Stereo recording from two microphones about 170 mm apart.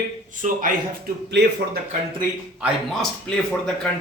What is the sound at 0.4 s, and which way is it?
Speech, 55° right (ahead or behind).